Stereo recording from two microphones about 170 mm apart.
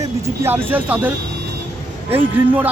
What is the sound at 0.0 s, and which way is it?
Speech, 15° right (ahead or behind).